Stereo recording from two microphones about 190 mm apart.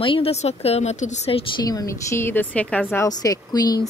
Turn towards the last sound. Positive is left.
turn(degrees=20)  # may be behind; listen again after turning